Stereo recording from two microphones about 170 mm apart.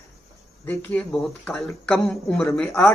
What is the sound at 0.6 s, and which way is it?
Speech, 10° left (ahead or behind).